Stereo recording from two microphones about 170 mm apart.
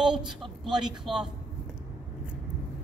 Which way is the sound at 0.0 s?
5° right (ahead or behind).